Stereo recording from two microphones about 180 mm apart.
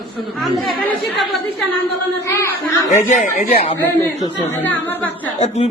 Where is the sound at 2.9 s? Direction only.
45° left (ahead or behind).